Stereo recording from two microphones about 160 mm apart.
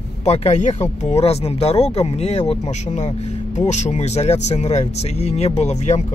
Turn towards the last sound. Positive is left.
turn(degrees=45)  # may be behind; listen again after turning